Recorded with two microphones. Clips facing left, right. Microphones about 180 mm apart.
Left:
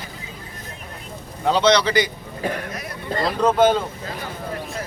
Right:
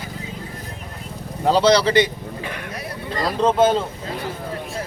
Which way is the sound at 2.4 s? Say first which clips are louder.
Left 8 dB; 40° left (ahead or behind).